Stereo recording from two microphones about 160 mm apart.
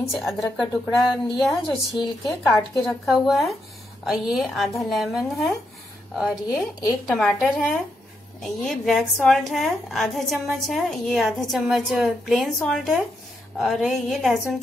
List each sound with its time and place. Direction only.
0.1 s a woman's voice: centre (ahead or behind)
2.0 s a woman's voice: 20° left (ahead or behind)
2.8 s a woman's voice: centre (ahead or behind)